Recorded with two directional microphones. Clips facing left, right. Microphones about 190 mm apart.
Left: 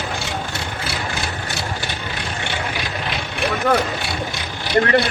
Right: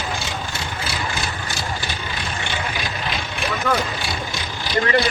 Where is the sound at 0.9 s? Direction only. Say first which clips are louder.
Left 1 dB; 60° left (ahead or behind).